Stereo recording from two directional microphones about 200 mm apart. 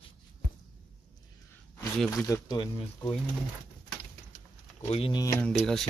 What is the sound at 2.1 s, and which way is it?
Speech, 15° left (ahead or behind).